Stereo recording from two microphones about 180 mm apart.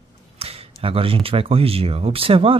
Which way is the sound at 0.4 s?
35° right (ahead or behind).